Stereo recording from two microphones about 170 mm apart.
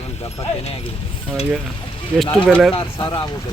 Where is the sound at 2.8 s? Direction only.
30° left (ahead or behind).